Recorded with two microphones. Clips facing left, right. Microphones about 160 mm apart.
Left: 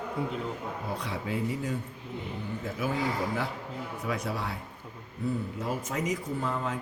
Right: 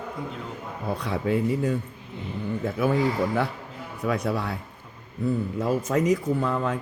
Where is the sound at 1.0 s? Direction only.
60° right (ahead or behind).